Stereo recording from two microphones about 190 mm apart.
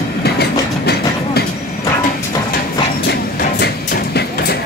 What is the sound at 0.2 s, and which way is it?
Train, 55° left (ahead or behind).